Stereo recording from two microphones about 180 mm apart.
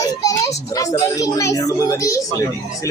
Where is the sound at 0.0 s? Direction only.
20° left (ahead or behind).